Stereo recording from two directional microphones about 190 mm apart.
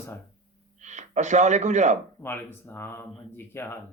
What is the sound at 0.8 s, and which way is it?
Speech, 40° right (ahead or behind).